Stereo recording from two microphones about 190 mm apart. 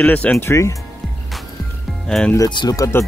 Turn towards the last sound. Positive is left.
turn(degrees=20)  # may be behind; listen again after turning